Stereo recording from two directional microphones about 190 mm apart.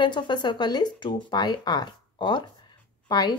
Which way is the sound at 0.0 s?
25° left (ahead or behind).